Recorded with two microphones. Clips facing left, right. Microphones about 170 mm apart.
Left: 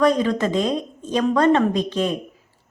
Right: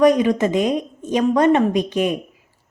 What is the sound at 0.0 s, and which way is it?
A woman's voice, 15° right (ahead or behind).